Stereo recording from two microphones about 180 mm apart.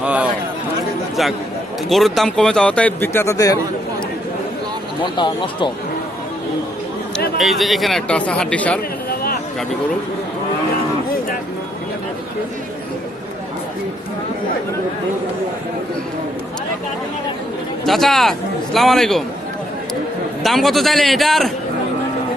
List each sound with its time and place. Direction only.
0.0 s a sound: 5° right (ahead or behind)
1.9 s speech: centre (ahead or behind); by 3.6 s 20° left (ahead or behind)
5.1 s speech: 25° left (ahead or behind)
7.3 s speech: centre (ahead or behind)
9.0 s a sound: 55° left (ahead or behind)
17.8 s a man's voice: centre (ahead or behind)
20.4 s speech: centre (ahead or behind)